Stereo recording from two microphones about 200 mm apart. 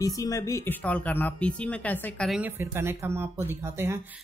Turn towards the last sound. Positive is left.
turn(degrees=-10)  # may be behind; listen again after turning